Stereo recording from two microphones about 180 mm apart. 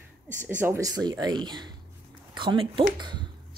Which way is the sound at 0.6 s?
15° right (ahead or behind).